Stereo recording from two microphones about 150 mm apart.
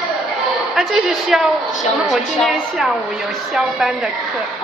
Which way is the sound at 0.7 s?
Centre (ahead or behind).